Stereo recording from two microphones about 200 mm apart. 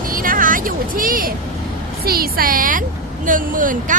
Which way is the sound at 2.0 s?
50° right (ahead or behind).